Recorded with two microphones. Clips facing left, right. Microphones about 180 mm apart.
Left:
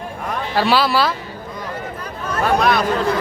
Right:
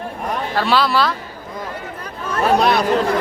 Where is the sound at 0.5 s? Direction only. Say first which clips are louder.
Left 1 dB; 5° left (ahead or behind).